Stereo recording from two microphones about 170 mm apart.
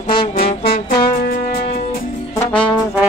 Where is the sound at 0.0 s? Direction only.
30° left (ahead or behind).